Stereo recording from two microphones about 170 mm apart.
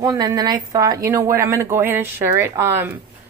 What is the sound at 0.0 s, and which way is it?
Speech, 20° right (ahead or behind).